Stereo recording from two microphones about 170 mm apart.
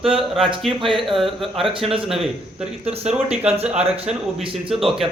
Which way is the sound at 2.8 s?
35° right (ahead or behind).